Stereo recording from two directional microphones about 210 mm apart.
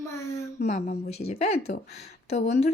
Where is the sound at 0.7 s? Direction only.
30° left (ahead or behind).